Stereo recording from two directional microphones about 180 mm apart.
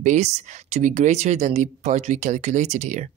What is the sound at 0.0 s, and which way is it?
Speech, 40° right (ahead or behind).